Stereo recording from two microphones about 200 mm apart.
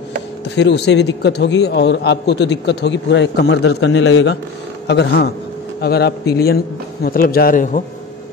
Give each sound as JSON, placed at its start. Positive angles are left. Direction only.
{"t": 0.6, "sound": "a man's voice", "side_deg": 60}